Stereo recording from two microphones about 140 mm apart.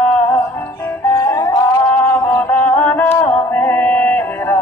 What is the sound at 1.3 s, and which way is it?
Music, 30° left (ahead or behind).